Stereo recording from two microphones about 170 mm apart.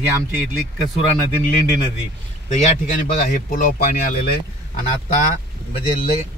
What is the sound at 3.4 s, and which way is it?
Speech, 50° left (ahead or behind).